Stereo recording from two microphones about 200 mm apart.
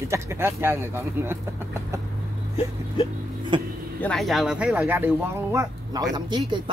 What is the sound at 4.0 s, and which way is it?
Speech, 5° left (ahead or behind).